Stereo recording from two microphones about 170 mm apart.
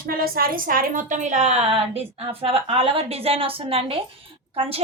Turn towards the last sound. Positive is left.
turn(degrees=-35)  # may be behind; listen again after turning